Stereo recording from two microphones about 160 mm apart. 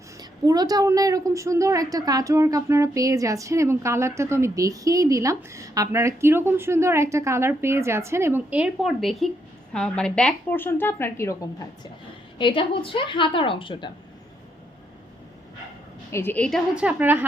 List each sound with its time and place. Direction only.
0.2 s a woman's voice: 25° right (ahead or behind); by 11.9 s 20° left (ahead or behind)
12.4 s a woman's voice: 30° left (ahead or behind)
16.1 s a woman's voice: 10° left (ahead or behind)
16.7 s a woman's voice: 10° right (ahead or behind)